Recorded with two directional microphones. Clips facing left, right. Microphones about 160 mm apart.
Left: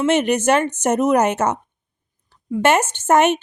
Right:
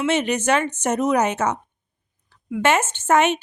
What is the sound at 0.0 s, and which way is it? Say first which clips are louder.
A woman's voice: left 4 dB; 45° left (ahead or behind).